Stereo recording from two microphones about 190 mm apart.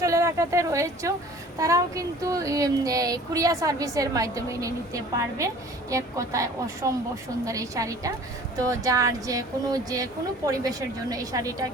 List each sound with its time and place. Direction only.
0.0 s a woman's voice: 15° right (ahead or behind)